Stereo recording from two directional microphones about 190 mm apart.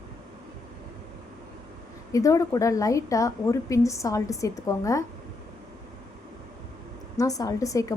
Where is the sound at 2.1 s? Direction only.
15° left (ahead or behind).